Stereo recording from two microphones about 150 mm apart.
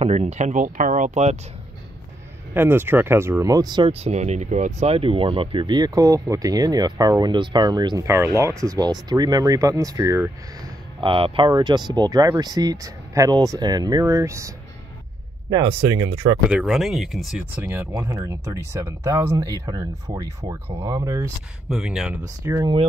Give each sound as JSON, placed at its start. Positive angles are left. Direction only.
{"t": 0.0, "sound": "speech", "side_deg": -45}
{"t": 2.5, "sound": "speech", "side_deg": -15}
{"t": 3.9, "sound": "speech", "side_deg": -45}
{"t": 11.0, "sound": "speech", "side_deg": -35}
{"t": 15.5, "sound": "speech", "side_deg": -30}
{"t": 16.4, "sound": "speech", "side_deg": -5}
{"t": 17.6, "sound": "speech", "side_deg": -15}
{"t": 21.6, "sound": "speech", "side_deg": -5}
{"t": 22.4, "sound": "speech", "side_deg": -20}